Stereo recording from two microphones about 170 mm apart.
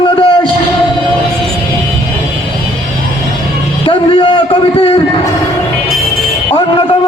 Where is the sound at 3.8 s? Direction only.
30° left (ahead or behind).